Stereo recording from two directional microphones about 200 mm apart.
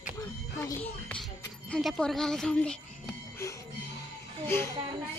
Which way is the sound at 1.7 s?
Centre (ahead or behind).